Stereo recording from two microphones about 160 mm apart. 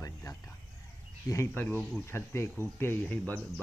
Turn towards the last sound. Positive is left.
turn(degrees=10)  # may be behind; listen again after turning